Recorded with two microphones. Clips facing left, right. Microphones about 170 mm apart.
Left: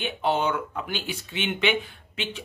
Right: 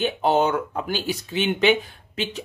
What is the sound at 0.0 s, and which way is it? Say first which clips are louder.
Speech: right 5 dB; 40° right (ahead or behind).